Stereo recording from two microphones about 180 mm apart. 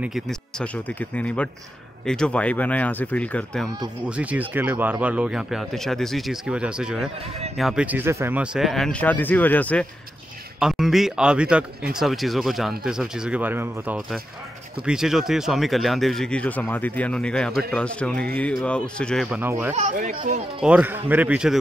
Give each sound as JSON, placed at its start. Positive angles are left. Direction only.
{"t": 0.0, "sound": "speech", "side_deg": 0}
{"t": 4.0, "sound": "speech", "side_deg": -5}
{"t": 19.7, "sound": "speech", "side_deg": -40}
{"t": 20.6, "sound": "a man's voice", "side_deg": -5}